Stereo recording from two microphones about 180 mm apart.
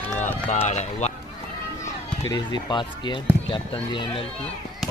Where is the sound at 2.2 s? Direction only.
25° left (ahead or behind).